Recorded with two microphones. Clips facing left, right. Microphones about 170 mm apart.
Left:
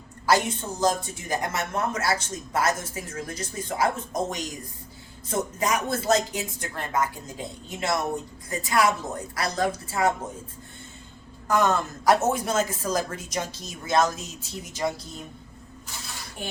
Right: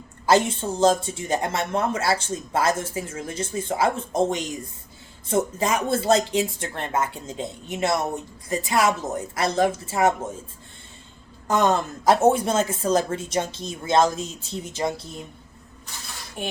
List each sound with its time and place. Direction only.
0.3 s speech: 25° right (ahead or behind)
11.4 s speech: 20° right (ahead or behind)